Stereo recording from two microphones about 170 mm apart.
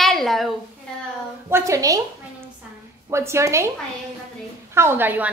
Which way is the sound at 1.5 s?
20° right (ahead or behind).